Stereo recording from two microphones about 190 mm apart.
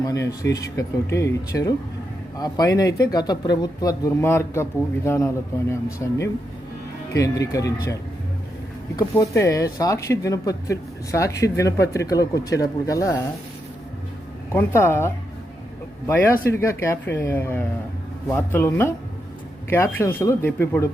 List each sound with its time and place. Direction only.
0.0 s speech: 15° left (ahead or behind)
9.0 s speech: 15° left (ahead or behind)
14.5 s speech: 15° left (ahead or behind)
16.5 s speech: 15° left (ahead or behind)